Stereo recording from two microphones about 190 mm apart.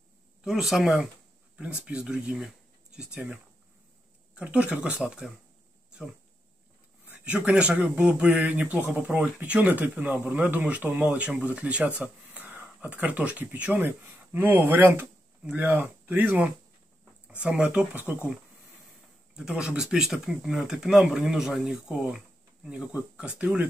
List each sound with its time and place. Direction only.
0.4 s speech: centre (ahead or behind)
4.4 s speech: 5° right (ahead or behind)
7.1 s speech: 5° right (ahead or behind)
19.3 s speech: 5° right (ahead or behind)